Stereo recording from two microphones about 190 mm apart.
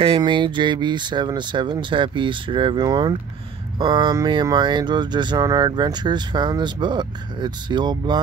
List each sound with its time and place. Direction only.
0.0 s speech: 25° right (ahead or behind)